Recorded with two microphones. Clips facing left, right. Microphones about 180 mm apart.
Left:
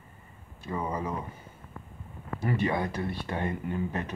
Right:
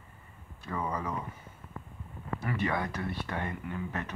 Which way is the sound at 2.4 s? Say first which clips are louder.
Left 4 dB; 30° left (ahead or behind).